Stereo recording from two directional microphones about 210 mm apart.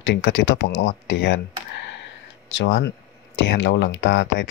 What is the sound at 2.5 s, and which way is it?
Speech, 60° left (ahead or behind).